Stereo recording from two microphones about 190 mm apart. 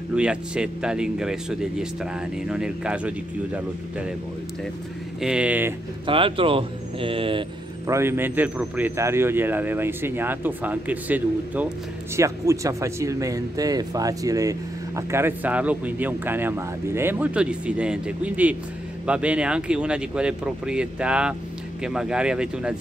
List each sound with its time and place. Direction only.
0.1 s speech: 5° right (ahead or behind)
5.2 s speech: 5° right (ahead or behind)
6.0 s speech: 30° right (ahead or behind)
7.9 s speech: 15° right (ahead or behind)